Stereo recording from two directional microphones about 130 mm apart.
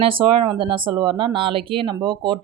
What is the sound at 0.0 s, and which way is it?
Speech, 45° right (ahead or behind).